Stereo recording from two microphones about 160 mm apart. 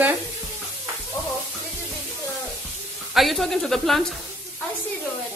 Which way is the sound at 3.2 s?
Centre (ahead or behind).